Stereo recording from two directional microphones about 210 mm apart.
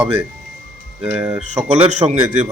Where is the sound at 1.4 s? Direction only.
30° right (ahead or behind).